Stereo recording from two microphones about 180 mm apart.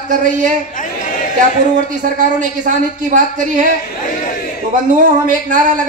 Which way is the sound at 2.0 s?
45° right (ahead or behind).